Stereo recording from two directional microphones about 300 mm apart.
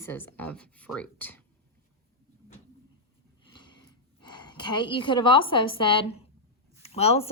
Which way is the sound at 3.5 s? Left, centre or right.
Centre.